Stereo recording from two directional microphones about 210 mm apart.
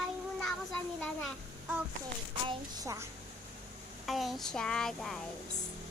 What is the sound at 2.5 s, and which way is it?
Speech, 15° right (ahead or behind).